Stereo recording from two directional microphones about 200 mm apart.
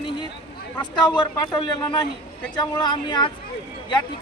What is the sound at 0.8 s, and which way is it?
Speech, 20° left (ahead or behind).